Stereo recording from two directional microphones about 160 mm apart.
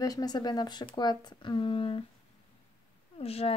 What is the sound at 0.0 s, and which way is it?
Speech, 25° left (ahead or behind).